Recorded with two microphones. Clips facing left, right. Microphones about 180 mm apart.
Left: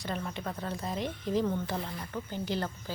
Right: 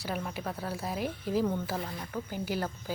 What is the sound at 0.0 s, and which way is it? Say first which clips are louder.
Speech: right 1 dB; 10° right (ahead or behind).